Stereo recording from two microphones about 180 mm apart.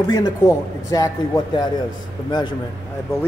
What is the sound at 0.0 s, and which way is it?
Speech, 15° left (ahead or behind).